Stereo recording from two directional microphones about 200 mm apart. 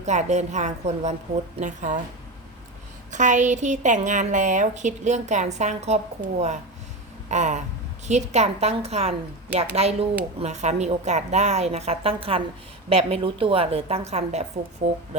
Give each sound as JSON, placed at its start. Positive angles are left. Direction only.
{"t": 0.0, "sound": "a woman's voice", "side_deg": -35}
{"t": 3.1, "sound": "a woman's voice", "side_deg": -35}